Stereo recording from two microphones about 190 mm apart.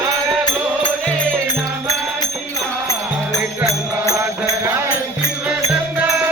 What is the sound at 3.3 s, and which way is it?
Music, 15° left (ahead or behind).